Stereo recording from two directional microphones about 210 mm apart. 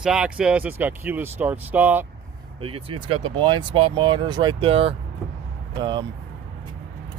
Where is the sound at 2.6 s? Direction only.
25° right (ahead or behind).